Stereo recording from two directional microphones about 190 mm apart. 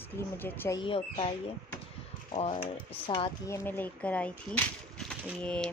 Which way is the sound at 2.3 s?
30° left (ahead or behind).